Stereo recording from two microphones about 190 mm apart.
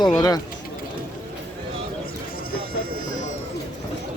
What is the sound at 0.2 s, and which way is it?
Speech, 20° left (ahead or behind).